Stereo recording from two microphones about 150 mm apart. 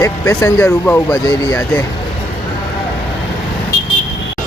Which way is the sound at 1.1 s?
25° left (ahead or behind).